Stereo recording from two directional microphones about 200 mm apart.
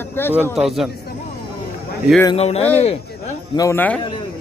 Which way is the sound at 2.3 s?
30° left (ahead or behind).